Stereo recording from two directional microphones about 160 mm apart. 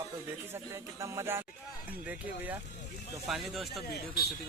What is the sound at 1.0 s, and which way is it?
Speech, 15° right (ahead or behind).